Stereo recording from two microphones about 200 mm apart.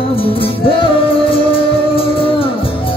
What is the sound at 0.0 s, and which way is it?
Music, 25° left (ahead or behind).